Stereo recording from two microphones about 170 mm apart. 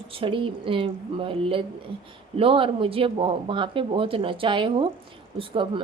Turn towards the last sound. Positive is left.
turn(degrees=-30)  # may be behind; listen again after turning